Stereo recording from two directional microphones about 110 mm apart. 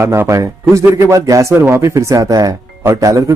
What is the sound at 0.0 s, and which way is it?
A man's voice, 25° right (ahead or behind).